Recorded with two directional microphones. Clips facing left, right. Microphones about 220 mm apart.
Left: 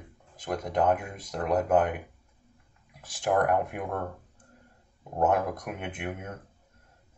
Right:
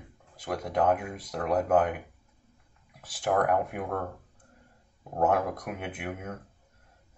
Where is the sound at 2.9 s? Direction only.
Centre (ahead or behind).